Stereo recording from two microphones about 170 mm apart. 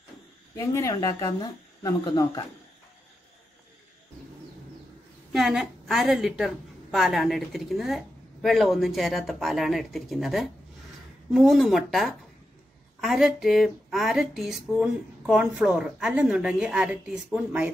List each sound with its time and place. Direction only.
0.6 s speech: 15° left (ahead or behind)
5.3 s a woman's voice: centre (ahead or behind)